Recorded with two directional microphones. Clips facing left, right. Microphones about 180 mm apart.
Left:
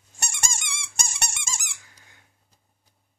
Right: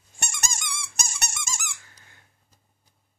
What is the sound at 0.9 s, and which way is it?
Squeak, 30° left (ahead or behind).